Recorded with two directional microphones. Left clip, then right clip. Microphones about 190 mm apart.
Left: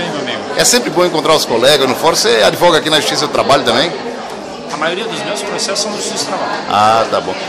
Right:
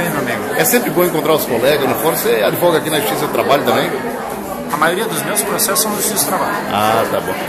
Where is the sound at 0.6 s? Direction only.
20° left (ahead or behind).